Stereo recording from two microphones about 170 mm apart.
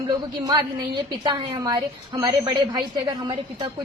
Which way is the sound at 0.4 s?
25° right (ahead or behind).